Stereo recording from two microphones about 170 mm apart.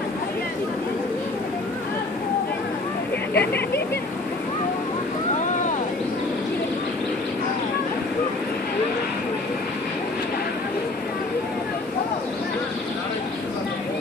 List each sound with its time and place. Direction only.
3.3 s speech: 75° left (ahead or behind)